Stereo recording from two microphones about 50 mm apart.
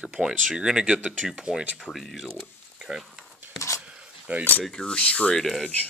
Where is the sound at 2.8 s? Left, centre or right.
Centre.